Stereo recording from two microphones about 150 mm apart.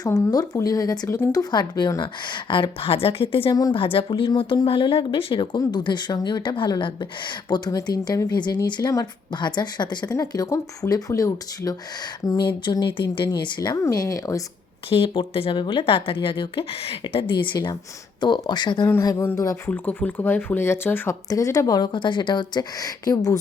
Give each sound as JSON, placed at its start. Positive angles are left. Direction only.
{"t": 0.0, "sound": "speech", "side_deg": 25}
{"t": 3.5, "sound": "speech", "side_deg": 25}
{"t": 3.8, "sound": "speech", "side_deg": 35}
{"t": 14.8, "sound": "speech", "side_deg": 40}
{"t": 18.9, "sound": "speech", "side_deg": 20}